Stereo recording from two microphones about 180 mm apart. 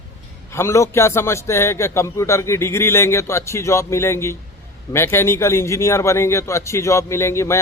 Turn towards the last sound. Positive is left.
turn(degrees=15)  # may be behind; listen again after turning